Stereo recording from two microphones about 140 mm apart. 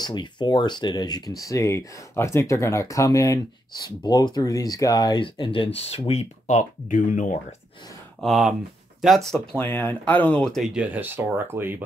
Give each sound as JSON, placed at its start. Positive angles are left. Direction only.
{"t": 0.0, "sound": "speech", "side_deg": 35}
{"t": 8.2, "sound": "speech", "side_deg": 0}